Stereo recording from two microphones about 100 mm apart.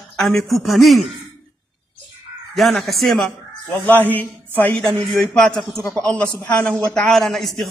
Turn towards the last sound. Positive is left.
turn(degrees=0)  # may be behind; listen again after turning